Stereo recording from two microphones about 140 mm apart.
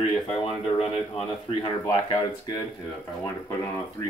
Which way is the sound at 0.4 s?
45° left (ahead or behind).